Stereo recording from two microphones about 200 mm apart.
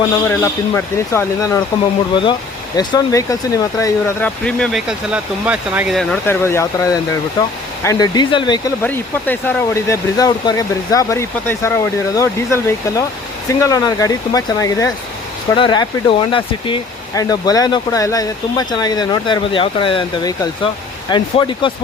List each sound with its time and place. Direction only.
0.3 s speech: 10° left (ahead or behind)
2.7 s speech: 15° left (ahead or behind)
8.8 s speech: 10° left (ahead or behind)